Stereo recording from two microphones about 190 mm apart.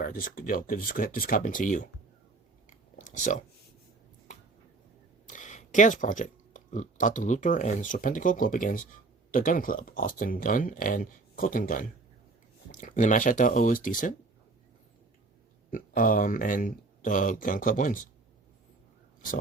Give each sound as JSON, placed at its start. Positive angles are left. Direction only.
{"t": 0.0, "sound": "speech", "side_deg": 45}
{"t": 3.0, "sound": "a sound", "side_deg": 40}
{"t": 5.2, "sound": "speech", "side_deg": 40}
{"t": 15.7, "sound": "speech", "side_deg": 45}